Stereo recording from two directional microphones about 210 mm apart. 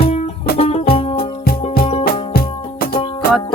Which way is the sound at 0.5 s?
25° left (ahead or behind).